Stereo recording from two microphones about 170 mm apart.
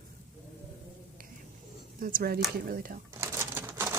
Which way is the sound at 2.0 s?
55° right (ahead or behind).